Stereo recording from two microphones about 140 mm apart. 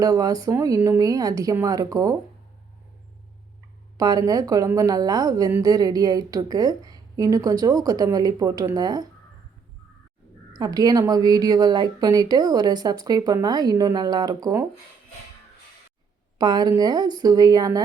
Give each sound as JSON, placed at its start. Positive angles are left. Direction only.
{"t": 0.0, "sound": "a woman's voice", "side_deg": -25}
{"t": 3.9, "sound": "a woman's voice", "side_deg": -25}
{"t": 10.5, "sound": "a woman's voice", "side_deg": -30}
{"t": 16.4, "sound": "a woman's voice", "side_deg": -30}